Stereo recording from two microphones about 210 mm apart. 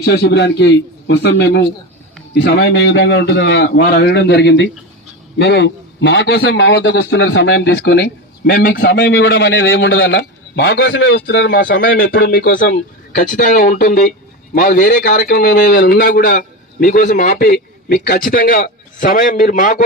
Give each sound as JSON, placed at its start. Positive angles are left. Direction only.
{"t": 0.0, "sound": "a man's voice", "side_deg": 50}
{"t": 11.9, "sound": "speech", "side_deg": 40}